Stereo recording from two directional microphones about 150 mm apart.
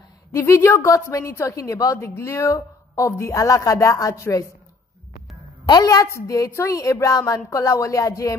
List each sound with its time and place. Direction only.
0.3 s a woman's voice: 20° left (ahead or behind)
5.7 s a woman's voice: 25° left (ahead or behind)